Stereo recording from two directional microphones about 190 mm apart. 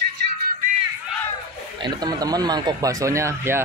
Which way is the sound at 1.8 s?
20° right (ahead or behind).